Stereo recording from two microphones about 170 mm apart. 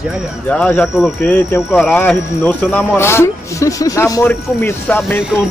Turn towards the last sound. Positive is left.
turn(degrees=10)  # may be behind; listen again after turning